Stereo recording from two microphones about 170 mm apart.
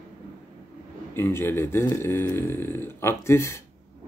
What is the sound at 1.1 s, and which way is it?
Speech, 15° left (ahead or behind).